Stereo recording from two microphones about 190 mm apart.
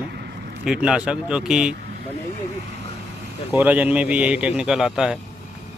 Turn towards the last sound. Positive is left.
turn(degrees=-5)  # may be behind; listen again after turning